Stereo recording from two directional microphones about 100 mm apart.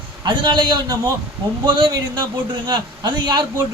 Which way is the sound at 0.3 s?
50° right (ahead or behind).